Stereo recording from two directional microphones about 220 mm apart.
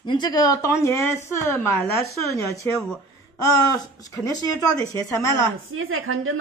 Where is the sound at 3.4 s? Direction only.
15° left (ahead or behind).